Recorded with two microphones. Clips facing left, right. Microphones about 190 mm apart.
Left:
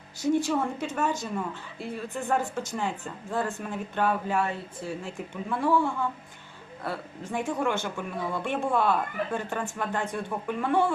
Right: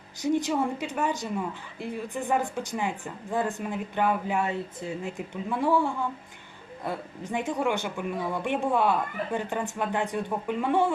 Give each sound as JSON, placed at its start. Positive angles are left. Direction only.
{"t": 0.2, "sound": "a woman's voice", "side_deg": -15}